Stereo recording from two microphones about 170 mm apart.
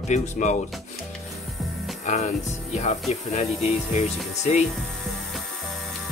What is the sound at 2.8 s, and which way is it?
Speech, 45° left (ahead or behind).